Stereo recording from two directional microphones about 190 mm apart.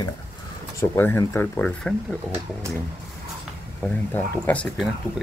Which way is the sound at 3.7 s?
10° left (ahead or behind).